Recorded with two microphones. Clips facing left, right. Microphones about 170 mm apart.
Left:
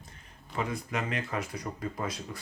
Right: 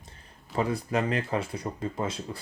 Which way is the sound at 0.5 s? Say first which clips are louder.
Right 6 dB; 35° right (ahead or behind).